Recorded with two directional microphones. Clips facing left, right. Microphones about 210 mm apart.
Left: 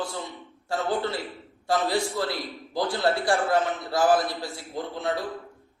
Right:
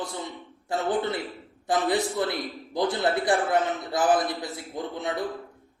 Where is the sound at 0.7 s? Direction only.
20° right (ahead or behind).